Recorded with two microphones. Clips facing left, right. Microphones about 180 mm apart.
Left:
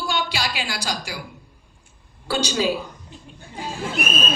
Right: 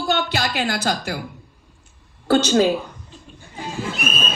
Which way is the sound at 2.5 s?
50° right (ahead or behind).